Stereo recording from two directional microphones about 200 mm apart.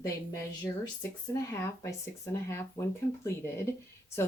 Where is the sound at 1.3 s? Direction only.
15° left (ahead or behind).